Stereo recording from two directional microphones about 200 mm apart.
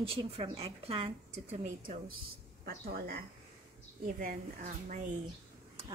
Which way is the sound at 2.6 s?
50° right (ahead or behind).